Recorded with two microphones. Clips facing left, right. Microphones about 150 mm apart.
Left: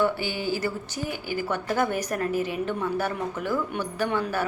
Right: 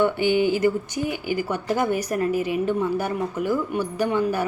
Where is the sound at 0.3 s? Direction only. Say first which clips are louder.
Right 9 dB; 20° right (ahead or behind).